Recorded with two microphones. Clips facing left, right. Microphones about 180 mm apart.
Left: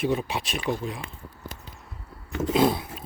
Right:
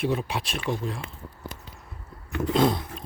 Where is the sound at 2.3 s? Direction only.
20° left (ahead or behind).